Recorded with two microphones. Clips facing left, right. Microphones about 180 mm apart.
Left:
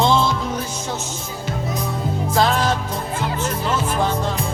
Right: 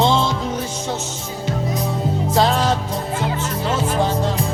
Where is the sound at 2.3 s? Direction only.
35° right (ahead or behind).